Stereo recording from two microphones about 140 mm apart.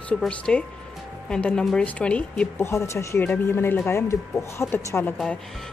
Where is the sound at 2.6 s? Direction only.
20° left (ahead or behind).